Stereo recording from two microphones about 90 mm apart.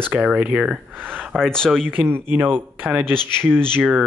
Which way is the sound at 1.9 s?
25° right (ahead or behind).